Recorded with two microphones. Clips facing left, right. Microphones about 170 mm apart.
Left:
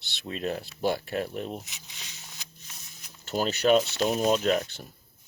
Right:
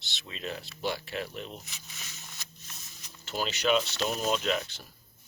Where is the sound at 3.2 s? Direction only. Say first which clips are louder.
Left 5 dB; 45° left (ahead or behind).